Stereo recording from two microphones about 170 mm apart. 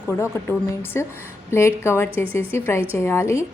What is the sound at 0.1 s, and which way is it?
A woman's voice, 10° left (ahead or behind).